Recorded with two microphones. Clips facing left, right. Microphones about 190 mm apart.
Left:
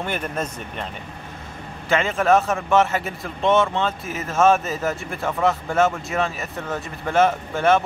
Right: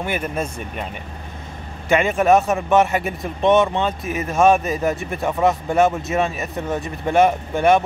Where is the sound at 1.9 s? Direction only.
15° right (ahead or behind).